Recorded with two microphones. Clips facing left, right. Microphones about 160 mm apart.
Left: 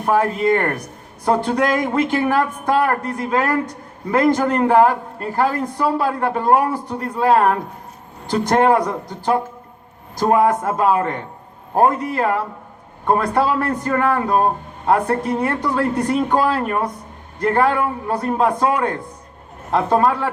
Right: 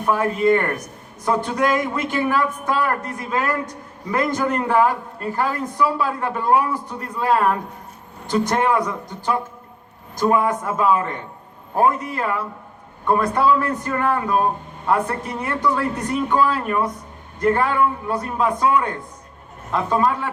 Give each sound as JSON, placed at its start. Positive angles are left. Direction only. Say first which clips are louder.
{"t": 0.0, "sound": "a man's voice", "louder": "left 1 dB", "side_deg": 50}
{"t": 16.0, "sound": "speech", "louder": "left 4 dB", "side_deg": 35}
{"t": 16.4, "sound": "a woman's voice", "louder": "left 1 dB", "side_deg": 55}